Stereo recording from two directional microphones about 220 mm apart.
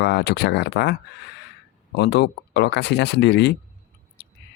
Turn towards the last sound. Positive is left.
turn(degrees=55)  # may be behind; listen again after turning